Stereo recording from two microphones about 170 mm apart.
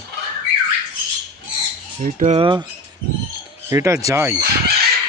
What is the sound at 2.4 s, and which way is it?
Speech, 25° right (ahead or behind).